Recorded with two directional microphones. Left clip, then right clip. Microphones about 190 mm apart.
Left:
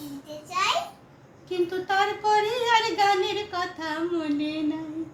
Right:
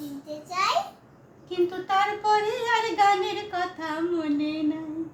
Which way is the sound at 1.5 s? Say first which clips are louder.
Even; 15° right (ahead or behind).